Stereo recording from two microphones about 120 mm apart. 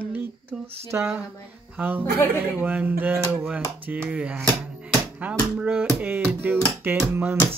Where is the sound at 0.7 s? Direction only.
20° right (ahead or behind).